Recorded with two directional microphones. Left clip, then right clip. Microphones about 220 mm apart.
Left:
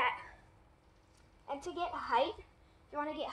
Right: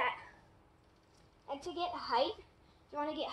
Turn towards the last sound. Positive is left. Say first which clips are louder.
# even
turn(degrees=0)  # may be behind; listen again after turning